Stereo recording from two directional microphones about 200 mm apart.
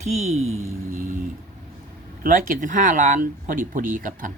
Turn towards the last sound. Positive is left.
turn(degrees=-40)  # may be behind; listen again after turning